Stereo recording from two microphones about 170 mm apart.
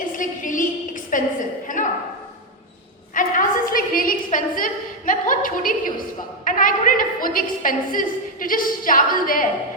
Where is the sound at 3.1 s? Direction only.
55° left (ahead or behind).